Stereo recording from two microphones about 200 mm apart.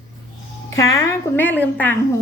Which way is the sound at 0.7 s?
15° left (ahead or behind).